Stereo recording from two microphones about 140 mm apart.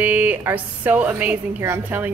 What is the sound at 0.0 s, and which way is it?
A woman's voice, 10° right (ahead or behind).